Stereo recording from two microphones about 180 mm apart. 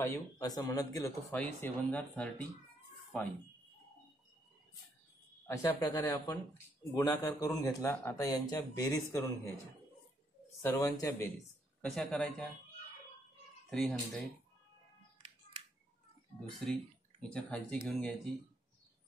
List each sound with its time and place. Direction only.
0.0 s speech: 15° left (ahead or behind)
5.6 s speech: 15° left (ahead or behind)
10.6 s speech: 15° left (ahead or behind)
11.8 s speech: centre (ahead or behind)
13.7 s speech: centre (ahead or behind)
16.6 s speech: 5° left (ahead or behind)